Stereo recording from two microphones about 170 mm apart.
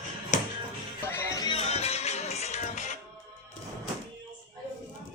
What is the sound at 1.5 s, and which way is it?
Music, 40° left (ahead or behind).